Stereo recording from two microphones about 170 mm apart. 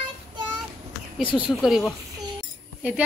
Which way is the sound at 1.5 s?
Centre (ahead or behind).